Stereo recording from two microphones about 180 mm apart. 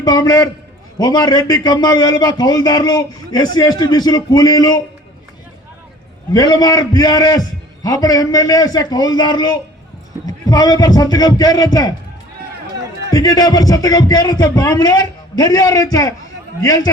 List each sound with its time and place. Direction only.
0.0 s a man's voice: 20° left (ahead or behind)
6.3 s a man's voice: 25° left (ahead or behind)
13.1 s a man's voice: 20° left (ahead or behind)